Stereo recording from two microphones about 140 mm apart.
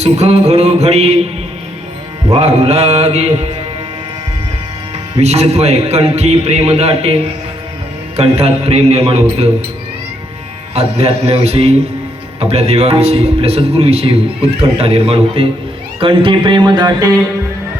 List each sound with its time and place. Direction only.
0.0 s a man's voice: 50° right (ahead or behind)
2.3 s a man's voice: 50° right (ahead or behind)
5.2 s a man's voice: 50° right (ahead or behind)
10.8 s a man's voice: 45° right (ahead or behind); by 17.2 s 30° right (ahead or behind)